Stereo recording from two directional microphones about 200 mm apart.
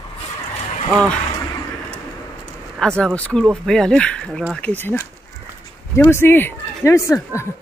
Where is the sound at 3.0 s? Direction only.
5° left (ahead or behind).